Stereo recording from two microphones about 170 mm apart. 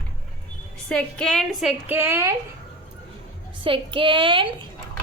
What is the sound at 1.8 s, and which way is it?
Speech, 10° right (ahead or behind).